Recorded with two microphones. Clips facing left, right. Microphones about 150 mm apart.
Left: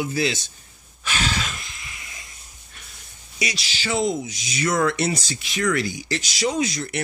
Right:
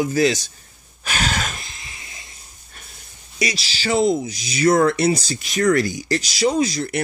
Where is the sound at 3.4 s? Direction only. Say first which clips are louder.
Right 4 dB; 35° right (ahead or behind).